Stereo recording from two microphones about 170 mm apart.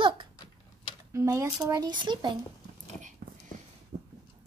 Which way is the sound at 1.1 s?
15° right (ahead or behind).